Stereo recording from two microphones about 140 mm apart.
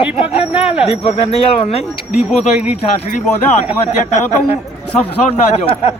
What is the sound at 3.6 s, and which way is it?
A man's voice, 45° left (ahead or behind).